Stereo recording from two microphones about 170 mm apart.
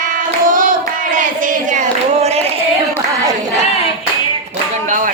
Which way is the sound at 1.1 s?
50° right (ahead or behind).